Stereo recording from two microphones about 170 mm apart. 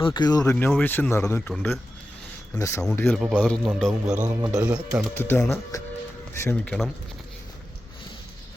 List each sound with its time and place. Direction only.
0.0 s speech: 25° left (ahead or behind)
0.5 s speech: 10° left (ahead or behind)
3.2 s a man's voice: 5° right (ahead or behind)
4.3 s speech: 15° right (ahead or behind)
5.1 s speech: 15° left (ahead or behind)